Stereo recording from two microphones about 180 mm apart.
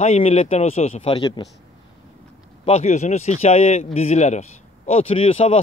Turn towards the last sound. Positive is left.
turn(degrees=30)  # may be behind; listen again after turning